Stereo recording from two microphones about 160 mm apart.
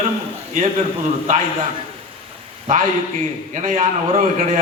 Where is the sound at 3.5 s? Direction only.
55° right (ahead or behind).